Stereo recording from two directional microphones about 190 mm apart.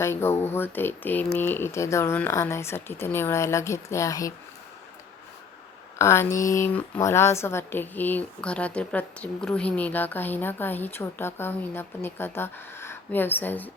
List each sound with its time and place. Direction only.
0.0 s a woman's voice: 10° left (ahead or behind)
6.0 s a woman's voice: 15° left (ahead or behind)